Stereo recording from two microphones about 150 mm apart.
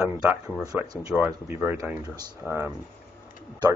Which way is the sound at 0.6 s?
25° right (ahead or behind).